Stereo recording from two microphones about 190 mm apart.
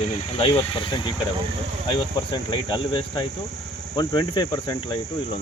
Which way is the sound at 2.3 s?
25° left (ahead or behind).